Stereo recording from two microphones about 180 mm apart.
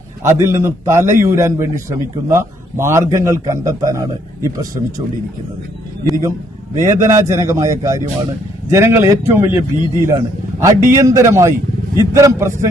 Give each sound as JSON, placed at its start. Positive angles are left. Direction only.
{"t": 0.2, "sound": "a man's voice", "side_deg": -15}
{"t": 6.8, "sound": "a man's voice", "side_deg": -15}